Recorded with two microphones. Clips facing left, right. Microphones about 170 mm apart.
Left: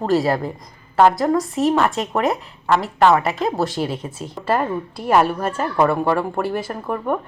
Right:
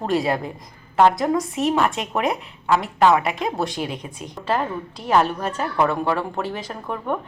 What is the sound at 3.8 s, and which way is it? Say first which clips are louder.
Speech: left 4 dB; 15° right (ahead or behind).